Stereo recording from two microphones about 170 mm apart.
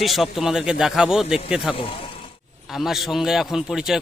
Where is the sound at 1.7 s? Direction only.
30° left (ahead or behind).